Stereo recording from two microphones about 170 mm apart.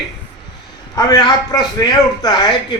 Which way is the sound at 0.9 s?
25° left (ahead or behind).